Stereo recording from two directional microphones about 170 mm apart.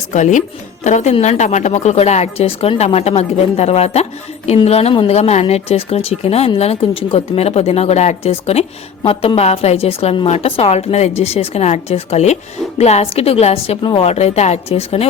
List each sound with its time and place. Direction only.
0.1 s speech: 45° left (ahead or behind)